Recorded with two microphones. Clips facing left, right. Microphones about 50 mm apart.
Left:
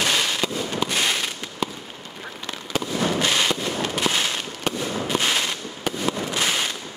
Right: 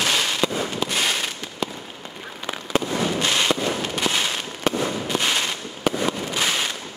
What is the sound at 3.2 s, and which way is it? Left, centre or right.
Fireworks, centre.